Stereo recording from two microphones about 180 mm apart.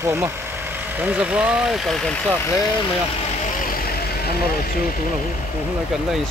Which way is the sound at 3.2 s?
35° left (ahead or behind).